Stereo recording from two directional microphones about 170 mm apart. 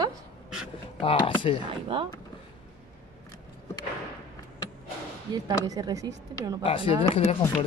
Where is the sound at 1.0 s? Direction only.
30° left (ahead or behind).